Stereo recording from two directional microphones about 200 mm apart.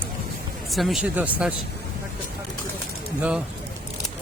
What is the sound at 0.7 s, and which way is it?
Speech, centre (ahead or behind).